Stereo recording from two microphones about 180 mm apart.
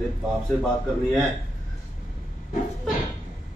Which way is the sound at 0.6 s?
Centre (ahead or behind).